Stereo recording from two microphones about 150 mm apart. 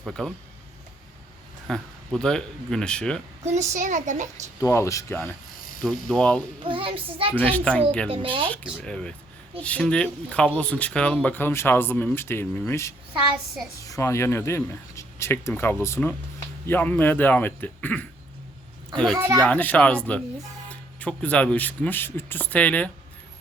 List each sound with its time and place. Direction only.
0.0 s speech: centre (ahead or behind)
1.6 s speech: 5° left (ahead or behind)
3.4 s a child's voice: 50° right (ahead or behind)
4.6 s speech: 20° left (ahead or behind)
5.8 s speech: 5° left (ahead or behind)
6.7 s a child's voice: 35° right (ahead or behind)
7.3 s speech: 10° left (ahead or behind)
8.1 s a child's voice: 35° right (ahead or behind)
8.8 s speech: 5° left (ahead or behind)
19.4 s speech: 10° left (ahead or behind)